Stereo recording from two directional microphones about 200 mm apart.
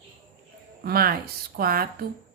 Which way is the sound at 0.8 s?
50° right (ahead or behind).